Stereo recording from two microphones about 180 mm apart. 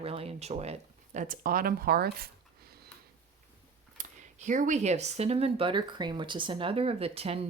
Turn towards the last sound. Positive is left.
turn(degrees=-35)  # may be behind; listen again after turning